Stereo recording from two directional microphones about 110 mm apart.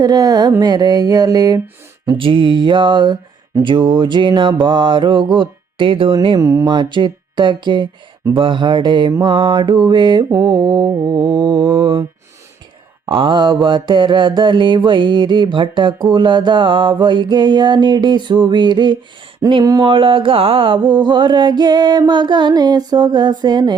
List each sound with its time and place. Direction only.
0.0 s mantra: 35° right (ahead or behind)
2.1 s mantra: 50° right (ahead or behind)
6.4 s mantra: 30° right (ahead or behind)
6.7 s mantra: 45° right (ahead or behind)
10.2 s mantra: 30° right (ahead or behind)
13.1 s mantra: 50° right (ahead or behind)
19.4 s speech: 30° right (ahead or behind)
19.8 s mantra: 50° right (ahead or behind)